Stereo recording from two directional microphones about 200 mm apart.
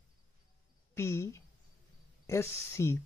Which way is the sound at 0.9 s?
15° left (ahead or behind).